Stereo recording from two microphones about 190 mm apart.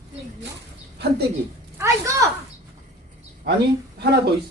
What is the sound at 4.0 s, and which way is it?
Speech, 60° right (ahead or behind).